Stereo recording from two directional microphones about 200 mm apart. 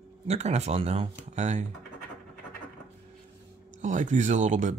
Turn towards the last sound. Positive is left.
turn(degrees=-40)  # may be behind; listen again after turning